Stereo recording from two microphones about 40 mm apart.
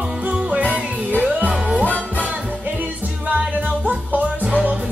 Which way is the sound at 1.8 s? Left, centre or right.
Left.